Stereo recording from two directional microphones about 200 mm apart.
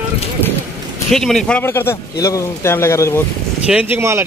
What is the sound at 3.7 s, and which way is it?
Speech, 10° right (ahead or behind).